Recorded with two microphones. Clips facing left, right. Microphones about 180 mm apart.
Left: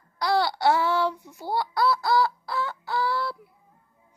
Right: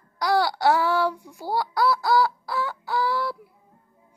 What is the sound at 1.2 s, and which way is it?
Fowl, 10° right (ahead or behind).